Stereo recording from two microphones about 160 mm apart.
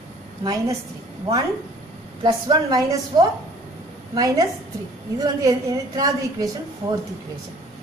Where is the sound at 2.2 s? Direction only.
30° right (ahead or behind).